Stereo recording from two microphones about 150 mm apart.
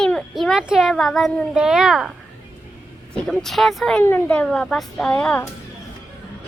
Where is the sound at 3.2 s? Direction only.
Centre (ahead or behind).